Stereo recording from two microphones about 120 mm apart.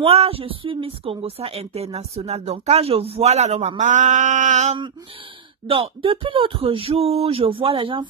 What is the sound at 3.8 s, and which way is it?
Mantra, 90° right.